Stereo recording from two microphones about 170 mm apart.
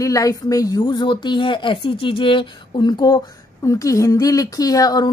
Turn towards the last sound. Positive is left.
turn(degrees=25)  # may be behind; listen again after turning